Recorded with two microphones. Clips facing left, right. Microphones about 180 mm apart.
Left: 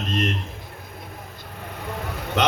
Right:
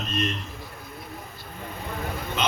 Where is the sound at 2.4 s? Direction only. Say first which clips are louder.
Left 6 dB; 70° left (ahead or behind).